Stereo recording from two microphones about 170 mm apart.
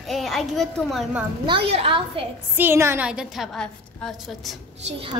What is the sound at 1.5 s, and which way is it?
Speech, 35° right (ahead or behind).